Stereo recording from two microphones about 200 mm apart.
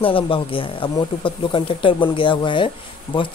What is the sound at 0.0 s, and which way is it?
Speech, 25° left (ahead or behind).